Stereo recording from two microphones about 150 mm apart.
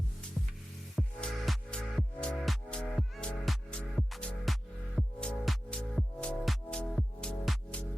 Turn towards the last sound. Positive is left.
turn(degrees=5)  # may be behind; listen again after turning